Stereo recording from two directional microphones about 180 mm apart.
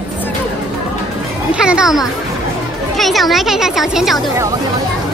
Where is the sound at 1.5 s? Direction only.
5° right (ahead or behind).